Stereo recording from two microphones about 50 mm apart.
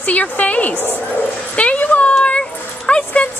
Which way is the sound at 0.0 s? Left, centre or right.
Left.